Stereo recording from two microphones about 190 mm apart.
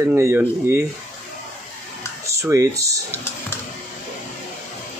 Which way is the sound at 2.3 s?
15° right (ahead or behind).